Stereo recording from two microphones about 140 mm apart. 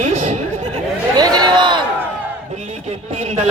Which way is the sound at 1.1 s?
30° right (ahead or behind).